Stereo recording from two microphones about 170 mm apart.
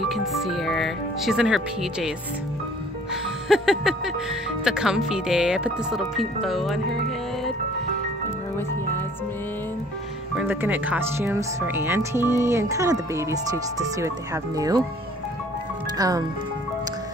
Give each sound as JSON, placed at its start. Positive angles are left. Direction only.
{"t": 0.1, "sound": "speech", "side_deg": 0}
{"t": 3.4, "sound": "speech", "side_deg": -5}
{"t": 10.3, "sound": "speech", "side_deg": -10}
{"t": 16.0, "sound": "speech", "side_deg": -20}